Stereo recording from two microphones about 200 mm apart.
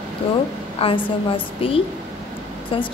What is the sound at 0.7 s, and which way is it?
Speech, 30° left (ahead or behind).